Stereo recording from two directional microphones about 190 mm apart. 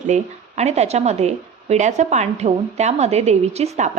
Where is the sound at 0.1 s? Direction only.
35° right (ahead or behind).